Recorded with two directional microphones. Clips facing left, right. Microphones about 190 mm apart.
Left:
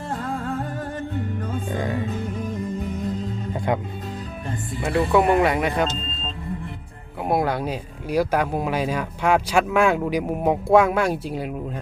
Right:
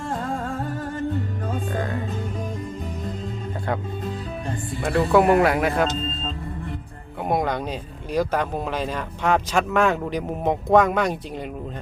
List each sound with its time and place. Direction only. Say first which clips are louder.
3.7 s speech: left 3 dB; 15° left (ahead or behind)
4.8 s speech: right 1 dB; centre (ahead or behind)
7.3 s speech: left 1 dB; 5° left (ahead or behind)